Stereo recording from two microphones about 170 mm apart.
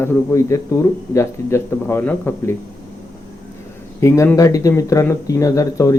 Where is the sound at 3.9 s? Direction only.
15° left (ahead or behind).